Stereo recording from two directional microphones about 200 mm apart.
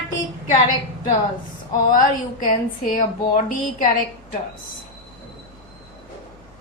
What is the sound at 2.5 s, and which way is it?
A woman's voice, 40° left (ahead or behind).